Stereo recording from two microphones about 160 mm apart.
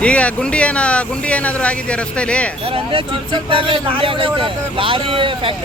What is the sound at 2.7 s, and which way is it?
Speech, 30° right (ahead or behind).